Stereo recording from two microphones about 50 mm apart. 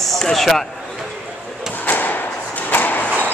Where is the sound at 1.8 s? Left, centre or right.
Left.